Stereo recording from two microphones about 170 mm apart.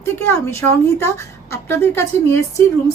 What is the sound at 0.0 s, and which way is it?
Speech, 15° left (ahead or behind).